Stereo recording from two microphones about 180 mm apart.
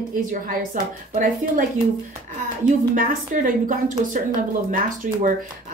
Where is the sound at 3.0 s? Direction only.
50° right (ahead or behind).